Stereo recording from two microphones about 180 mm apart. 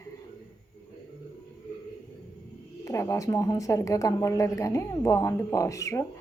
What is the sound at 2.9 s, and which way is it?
A woman's voice, 15° left (ahead or behind).